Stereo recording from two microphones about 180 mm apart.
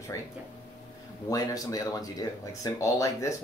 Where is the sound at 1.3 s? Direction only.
20° left (ahead or behind).